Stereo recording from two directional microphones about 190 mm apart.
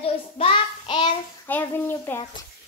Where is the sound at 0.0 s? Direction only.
30° left (ahead or behind).